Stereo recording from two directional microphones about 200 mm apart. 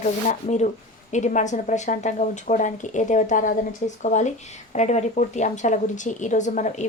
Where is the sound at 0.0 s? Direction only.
35° left (ahead or behind).